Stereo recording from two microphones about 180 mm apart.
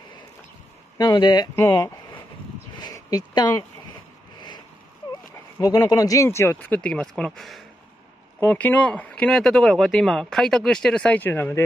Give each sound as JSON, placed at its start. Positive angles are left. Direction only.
{"t": 0.9, "sound": "speech", "side_deg": 25}
{"t": 5.3, "sound": "speech", "side_deg": 20}